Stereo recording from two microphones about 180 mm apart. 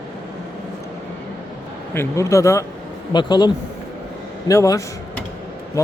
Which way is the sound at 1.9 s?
15° left (ahead or behind).